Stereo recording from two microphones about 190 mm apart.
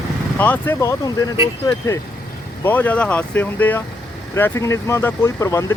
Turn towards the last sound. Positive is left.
turn(degrees=15)  # may be behind; listen again after turning